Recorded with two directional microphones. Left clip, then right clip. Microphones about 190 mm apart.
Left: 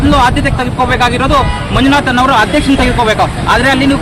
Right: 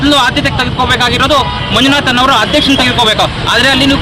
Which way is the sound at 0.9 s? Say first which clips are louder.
Right 2 dB; 15° left (ahead or behind).